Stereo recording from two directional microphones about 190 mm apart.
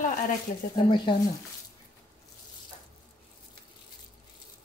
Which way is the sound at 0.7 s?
25° left (ahead or behind).